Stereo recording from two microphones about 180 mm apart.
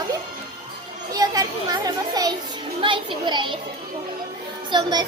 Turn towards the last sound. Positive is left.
turn(degrees=-25)  # may be behind; listen again after turning